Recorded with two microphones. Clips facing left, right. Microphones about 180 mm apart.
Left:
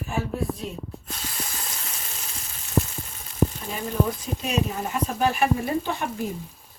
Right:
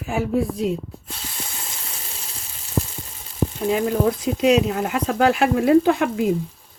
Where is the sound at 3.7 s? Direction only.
90° right.